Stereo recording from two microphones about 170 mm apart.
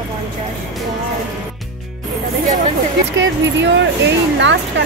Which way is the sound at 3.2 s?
90° right.